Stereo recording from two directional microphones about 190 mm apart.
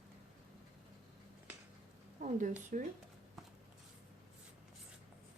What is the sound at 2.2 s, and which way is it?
Speech, 45° right (ahead or behind).